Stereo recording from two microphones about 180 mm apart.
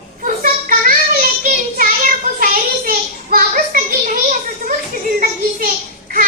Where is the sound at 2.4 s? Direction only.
50° right (ahead or behind).